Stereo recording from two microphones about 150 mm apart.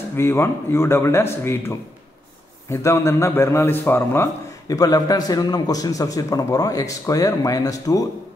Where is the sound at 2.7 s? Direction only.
20° left (ahead or behind).